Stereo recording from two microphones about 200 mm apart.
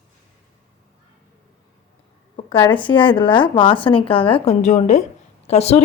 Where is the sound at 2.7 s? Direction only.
25° left (ahead or behind).